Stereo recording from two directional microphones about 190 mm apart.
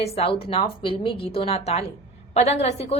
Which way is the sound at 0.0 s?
35° left (ahead or behind).